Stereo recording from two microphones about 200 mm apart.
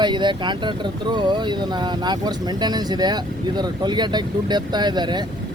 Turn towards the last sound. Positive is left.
turn(degrees=-20)  # may be behind; listen again after turning